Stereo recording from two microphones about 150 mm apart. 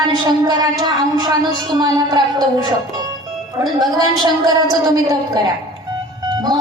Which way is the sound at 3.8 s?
25° right (ahead or behind).